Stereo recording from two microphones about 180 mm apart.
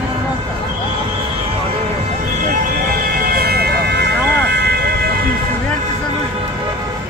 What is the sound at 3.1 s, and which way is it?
Siren, 55° right (ahead or behind).